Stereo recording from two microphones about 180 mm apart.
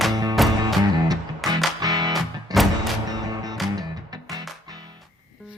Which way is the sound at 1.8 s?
20° right (ahead or behind).